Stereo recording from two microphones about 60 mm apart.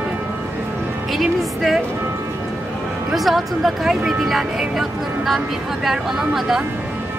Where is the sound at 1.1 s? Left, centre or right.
Centre.